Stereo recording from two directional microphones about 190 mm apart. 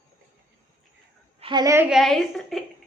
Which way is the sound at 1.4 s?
25° right (ahead or behind).